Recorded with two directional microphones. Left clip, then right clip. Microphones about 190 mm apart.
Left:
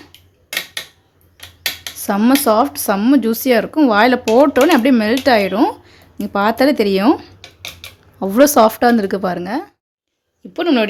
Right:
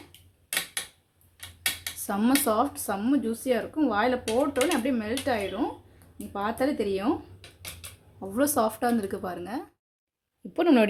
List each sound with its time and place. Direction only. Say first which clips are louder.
2.0 s speech: left 12 dB; 30° left (ahead or behind)
8.2 s speech: left 15 dB; 35° left (ahead or behind)
10.5 s speech: left 6 dB; 5° right (ahead or behind)